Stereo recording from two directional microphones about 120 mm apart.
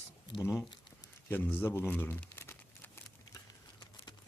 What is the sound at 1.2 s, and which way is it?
Speech, 15° left (ahead or behind).